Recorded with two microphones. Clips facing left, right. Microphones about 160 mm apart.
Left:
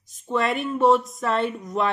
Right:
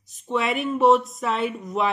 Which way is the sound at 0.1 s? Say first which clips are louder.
Left 1 dB; centre (ahead or behind).